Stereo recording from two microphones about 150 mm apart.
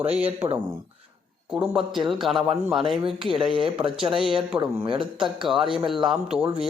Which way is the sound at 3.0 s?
35° right (ahead or behind).